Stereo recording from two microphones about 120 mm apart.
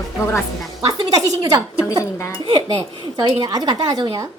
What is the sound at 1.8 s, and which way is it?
Speech, 25° left (ahead or behind).